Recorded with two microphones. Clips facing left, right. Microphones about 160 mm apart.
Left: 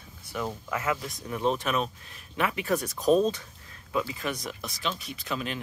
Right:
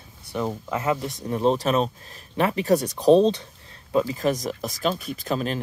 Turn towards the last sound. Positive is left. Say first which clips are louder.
# right 7 dB
turn(degrees=-40)  # may be behind; listen again after turning